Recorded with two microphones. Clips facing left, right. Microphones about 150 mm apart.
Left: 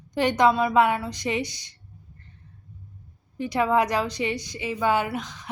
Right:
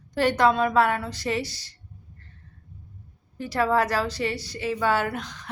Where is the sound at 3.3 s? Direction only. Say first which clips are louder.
Left 1 dB; 15° left (ahead or behind).